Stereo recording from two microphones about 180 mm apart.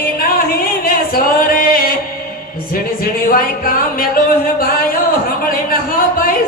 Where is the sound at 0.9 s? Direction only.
50° left (ahead or behind).